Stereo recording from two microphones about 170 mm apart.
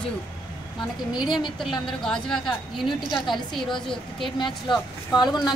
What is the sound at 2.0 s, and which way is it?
A woman's voice, 5° left (ahead or behind).